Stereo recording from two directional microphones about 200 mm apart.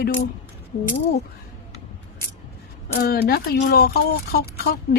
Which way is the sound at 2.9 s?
50° left (ahead or behind).